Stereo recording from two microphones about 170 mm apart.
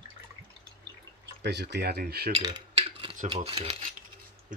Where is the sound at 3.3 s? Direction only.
35° right (ahead or behind).